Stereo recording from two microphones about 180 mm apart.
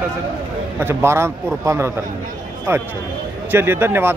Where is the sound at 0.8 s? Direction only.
10° right (ahead or behind).